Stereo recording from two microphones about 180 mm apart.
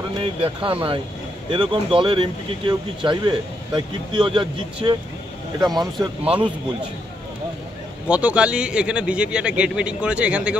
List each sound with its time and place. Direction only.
0.2 s speech: 30° right (ahead or behind)
5.9 s speech: 5° right (ahead or behind)
8.1 s speech: 5° right (ahead or behind)